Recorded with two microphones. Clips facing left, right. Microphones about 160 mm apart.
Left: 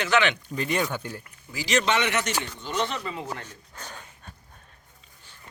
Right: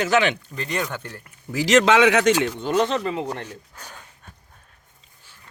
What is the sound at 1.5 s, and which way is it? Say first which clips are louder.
Speech: right 8 dB; 85° right.